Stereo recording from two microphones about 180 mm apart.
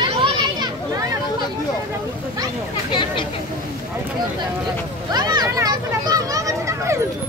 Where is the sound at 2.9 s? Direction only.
25° left (ahead or behind).